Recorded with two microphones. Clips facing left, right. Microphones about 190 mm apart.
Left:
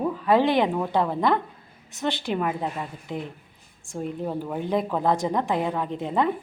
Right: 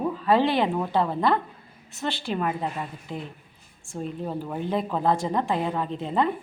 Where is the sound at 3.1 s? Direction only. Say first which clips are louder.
Left 3 dB; 15° left (ahead or behind).